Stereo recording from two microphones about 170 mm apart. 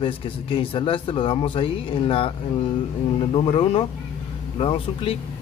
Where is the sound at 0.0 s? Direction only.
30° left (ahead or behind).